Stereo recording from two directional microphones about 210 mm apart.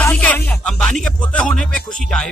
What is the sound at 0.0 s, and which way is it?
Music, 5° left (ahead or behind).